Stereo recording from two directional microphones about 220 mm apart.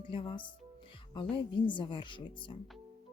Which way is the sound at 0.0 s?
20° left (ahead or behind).